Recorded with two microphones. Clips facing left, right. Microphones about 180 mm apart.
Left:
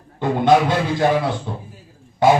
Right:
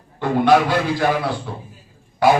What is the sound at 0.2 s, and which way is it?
Speech, 20° left (ahead or behind).